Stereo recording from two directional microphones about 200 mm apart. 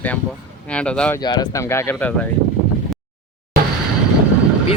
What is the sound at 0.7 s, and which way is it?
Speech, 5° left (ahead or behind).